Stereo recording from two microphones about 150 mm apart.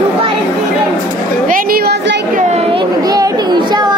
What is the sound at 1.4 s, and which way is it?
A woman's voice, 70° right (ahead or behind).